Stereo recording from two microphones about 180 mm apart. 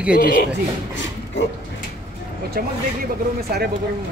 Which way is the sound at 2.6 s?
55° right (ahead or behind).